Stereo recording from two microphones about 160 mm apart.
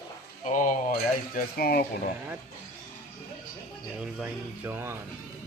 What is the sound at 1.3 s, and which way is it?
Speech, 70° left (ahead or behind).